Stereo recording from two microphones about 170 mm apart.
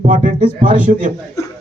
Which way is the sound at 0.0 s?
50° right (ahead or behind).